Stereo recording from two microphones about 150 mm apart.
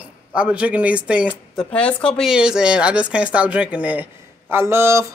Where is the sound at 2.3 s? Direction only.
5° right (ahead or behind).